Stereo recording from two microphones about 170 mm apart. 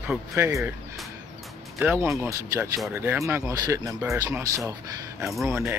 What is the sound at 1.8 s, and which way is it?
Speech, 10° right (ahead or behind).